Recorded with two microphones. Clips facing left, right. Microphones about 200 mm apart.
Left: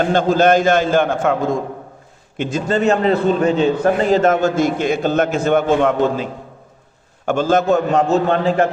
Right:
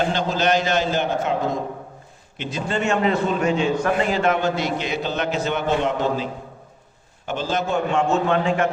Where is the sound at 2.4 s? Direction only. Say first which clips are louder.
Left 7 dB; 45° left (ahead or behind).